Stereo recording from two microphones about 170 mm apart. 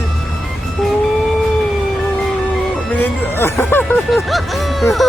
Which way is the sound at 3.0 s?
15° left (ahead or behind).